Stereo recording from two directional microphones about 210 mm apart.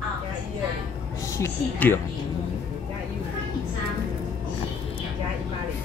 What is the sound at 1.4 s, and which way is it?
Speech, 10° left (ahead or behind).